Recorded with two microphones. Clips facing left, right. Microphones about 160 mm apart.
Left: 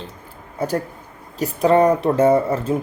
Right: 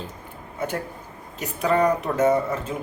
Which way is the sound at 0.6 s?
35° left (ahead or behind).